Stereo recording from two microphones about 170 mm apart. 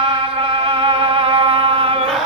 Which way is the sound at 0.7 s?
30° right (ahead or behind).